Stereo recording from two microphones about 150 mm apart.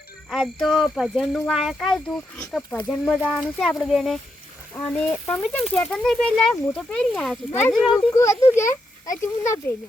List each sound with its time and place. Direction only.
0.3 s a child's voice: centre (ahead or behind)
7.9 s speech: 20° left (ahead or behind)